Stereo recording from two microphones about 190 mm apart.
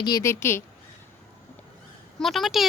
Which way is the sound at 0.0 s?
15° left (ahead or behind).